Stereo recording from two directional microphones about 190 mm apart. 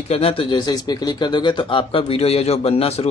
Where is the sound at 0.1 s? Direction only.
30° left (ahead or behind).